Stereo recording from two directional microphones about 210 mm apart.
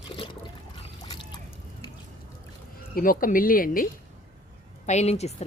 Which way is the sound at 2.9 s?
40° left (ahead or behind).